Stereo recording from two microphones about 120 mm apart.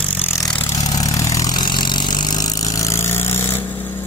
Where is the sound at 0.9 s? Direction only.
30° left (ahead or behind).